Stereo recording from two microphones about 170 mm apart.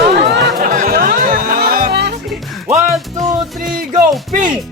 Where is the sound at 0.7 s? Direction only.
55° right (ahead or behind); by 2.1 s 75° right (ahead or behind).